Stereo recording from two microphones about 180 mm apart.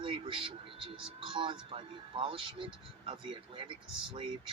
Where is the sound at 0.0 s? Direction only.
30° right (ahead or behind).